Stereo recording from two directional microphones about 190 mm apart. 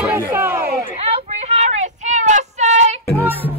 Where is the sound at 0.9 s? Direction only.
35° right (ahead or behind).